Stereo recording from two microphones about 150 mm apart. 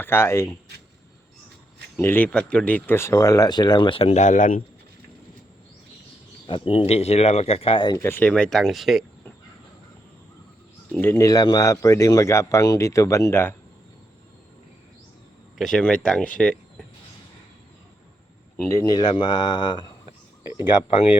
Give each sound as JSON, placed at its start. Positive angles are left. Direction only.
{"t": 0.0, "sound": "speech", "side_deg": 15}
{"t": 2.0, "sound": "speech", "side_deg": 10}
{"t": 6.5, "sound": "speech", "side_deg": 40}
{"t": 7.9, "sound": "speech", "side_deg": 15}
{"t": 10.9, "sound": "speech", "side_deg": 15}
{"t": 15.5, "sound": "speech", "side_deg": 5}
{"t": 18.8, "sound": "speech", "side_deg": 30}